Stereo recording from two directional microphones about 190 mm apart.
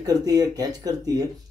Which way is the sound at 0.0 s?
20° right (ahead or behind).